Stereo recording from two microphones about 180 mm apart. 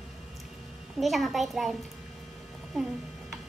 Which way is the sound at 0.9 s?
Centre (ahead or behind).